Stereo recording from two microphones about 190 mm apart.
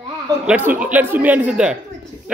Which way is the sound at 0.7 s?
10° right (ahead or behind).